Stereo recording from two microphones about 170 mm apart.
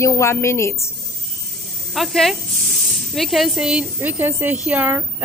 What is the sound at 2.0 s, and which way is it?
Speech, centre (ahead or behind).